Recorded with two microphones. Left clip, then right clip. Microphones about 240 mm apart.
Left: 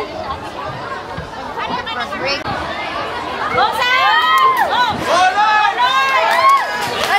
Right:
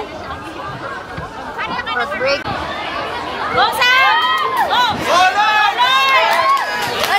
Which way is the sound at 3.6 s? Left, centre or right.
Centre.